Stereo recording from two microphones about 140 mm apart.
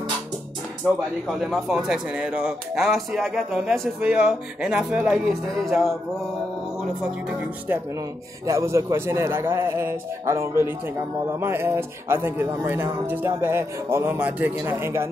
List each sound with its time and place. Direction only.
1.4 s speech: 5° right (ahead or behind)
8.5 s speech: 20° right (ahead or behind)